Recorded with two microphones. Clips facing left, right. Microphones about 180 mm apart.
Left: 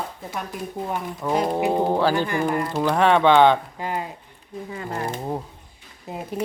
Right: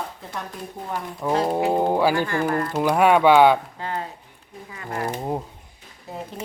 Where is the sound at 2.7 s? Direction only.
10° right (ahead or behind).